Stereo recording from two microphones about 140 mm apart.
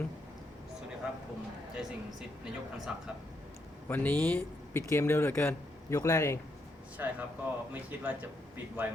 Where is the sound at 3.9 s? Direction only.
15° left (ahead or behind).